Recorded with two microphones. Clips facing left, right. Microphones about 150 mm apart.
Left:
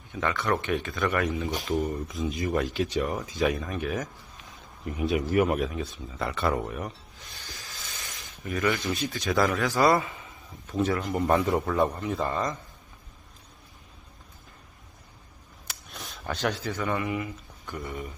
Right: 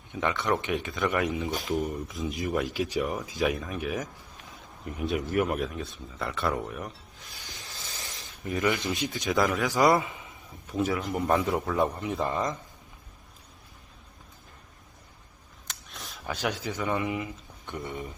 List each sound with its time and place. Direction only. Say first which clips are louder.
0.1 s speech: even; 20° right (ahead or behind)
1.7 s speech: left 3 dB; centre (ahead or behind)
7.3 s hiss: left 1 dB; 20° right (ahead or behind)
8.1 s a man's voice: right 1 dB; 20° right (ahead or behind)
10.7 s speech: left 1 dB; 5° right (ahead or behind)
11.9 s speech: even; 15° right (ahead or behind)
15.6 s a sound: left 2 dB; 5° left (ahead or behind); by 17.2 s 20° right (ahead or behind)
17.7 s speech: even; 25° right (ahead or behind)